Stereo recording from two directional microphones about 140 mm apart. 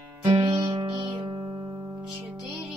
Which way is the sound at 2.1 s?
20° right (ahead or behind).